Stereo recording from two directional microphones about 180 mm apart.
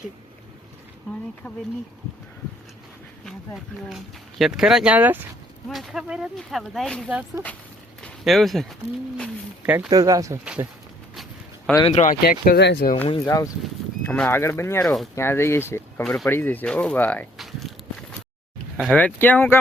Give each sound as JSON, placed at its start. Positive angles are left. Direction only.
{"t": 3.2, "sound": "speech", "side_deg": 0}
{"t": 8.0, "sound": "a sound", "side_deg": 0}
{"t": 9.6, "sound": "speech", "side_deg": -10}
{"t": 9.9, "sound": "speech", "side_deg": -20}
{"t": 10.4, "sound": "speech", "side_deg": -5}
{"t": 11.1, "sound": "a sound", "side_deg": 0}
{"t": 11.9, "sound": "speech", "side_deg": 40}
{"t": 12.2, "sound": "speech", "side_deg": 55}
{"t": 13.1, "sound": "speech", "side_deg": 20}
{"t": 18.9, "sound": "speech", "side_deg": 10}